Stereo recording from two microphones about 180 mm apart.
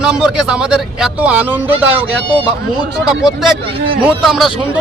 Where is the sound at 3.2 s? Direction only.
Centre (ahead or behind).